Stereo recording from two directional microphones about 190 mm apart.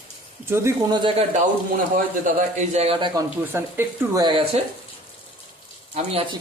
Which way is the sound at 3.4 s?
10° right (ahead or behind).